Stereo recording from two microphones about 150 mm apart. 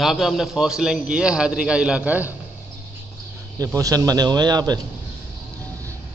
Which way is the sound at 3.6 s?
25° right (ahead or behind).